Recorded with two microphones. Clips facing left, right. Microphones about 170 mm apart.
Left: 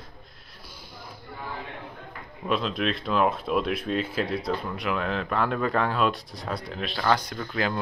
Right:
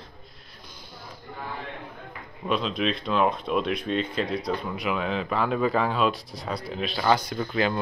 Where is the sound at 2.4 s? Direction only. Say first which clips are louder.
Right 1 dB; centre (ahead or behind).